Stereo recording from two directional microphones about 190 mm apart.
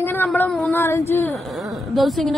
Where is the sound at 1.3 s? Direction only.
Centre (ahead or behind).